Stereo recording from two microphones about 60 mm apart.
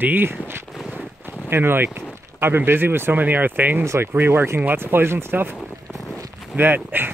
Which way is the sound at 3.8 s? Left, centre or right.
Right.